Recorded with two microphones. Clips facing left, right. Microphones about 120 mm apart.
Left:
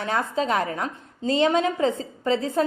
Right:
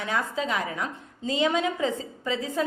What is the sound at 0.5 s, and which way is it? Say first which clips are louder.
Speech: left 5 dB; 45° left (ahead or behind).